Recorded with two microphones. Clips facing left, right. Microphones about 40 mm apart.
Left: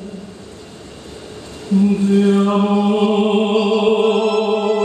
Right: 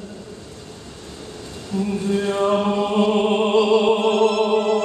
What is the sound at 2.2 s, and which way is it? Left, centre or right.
Music, centre.